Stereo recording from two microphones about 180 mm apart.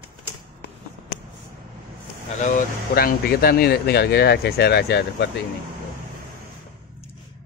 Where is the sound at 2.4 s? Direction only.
50° left (ahead or behind); by 5.3 s 70° left (ahead or behind).